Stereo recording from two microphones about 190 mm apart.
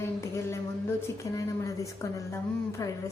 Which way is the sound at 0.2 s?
15° left (ahead or behind).